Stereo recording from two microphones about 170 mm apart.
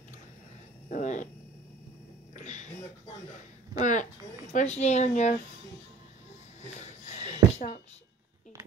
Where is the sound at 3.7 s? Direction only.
50° left (ahead or behind).